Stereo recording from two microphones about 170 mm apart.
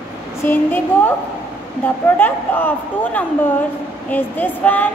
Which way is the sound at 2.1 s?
10° left (ahead or behind).